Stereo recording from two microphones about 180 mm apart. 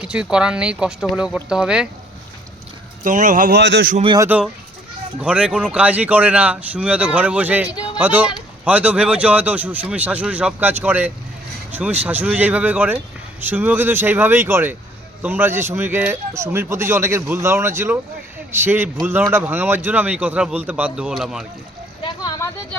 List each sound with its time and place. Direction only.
0.0 s speech: 5° right (ahead or behind)
3.0 s a man's voice: 45° right (ahead or behind)
3.6 s speech: 75° right (ahead or behind)
4.0 s speech: 25° right (ahead or behind)
4.3 s speech: 5° right (ahead or behind)
22.0 s a sound: 25° left (ahead or behind)